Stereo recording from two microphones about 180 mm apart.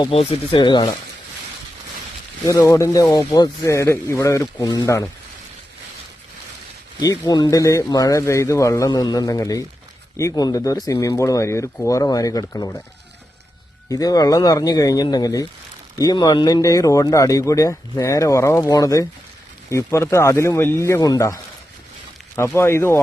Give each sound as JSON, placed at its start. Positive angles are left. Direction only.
{"t": 0.0, "sound": "speech", "side_deg": 35}
{"t": 2.5, "sound": "speech", "side_deg": 20}
{"t": 7.0, "sound": "speech", "side_deg": 20}
{"t": 13.9, "sound": "speech", "side_deg": 20}
{"t": 22.5, "sound": "speech", "side_deg": 15}